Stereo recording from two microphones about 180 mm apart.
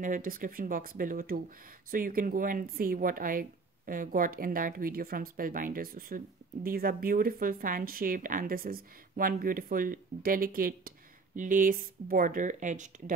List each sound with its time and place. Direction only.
0.0 s speech: 50° right (ahead or behind)